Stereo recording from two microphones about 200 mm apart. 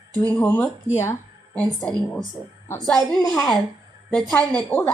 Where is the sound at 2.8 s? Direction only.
Centre (ahead or behind).